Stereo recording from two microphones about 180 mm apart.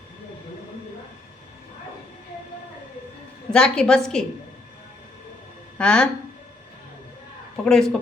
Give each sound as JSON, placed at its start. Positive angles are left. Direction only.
{"t": 3.5, "sound": "a woman's voice", "side_deg": 5}
{"t": 5.7, "sound": "speech", "side_deg": 5}
{"t": 7.5, "sound": "speech", "side_deg": 5}